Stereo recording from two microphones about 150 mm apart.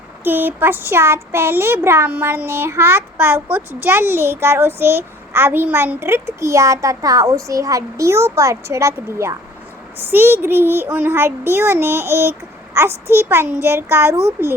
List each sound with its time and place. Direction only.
0.3 s a child's voice: 15° right (ahead or behind)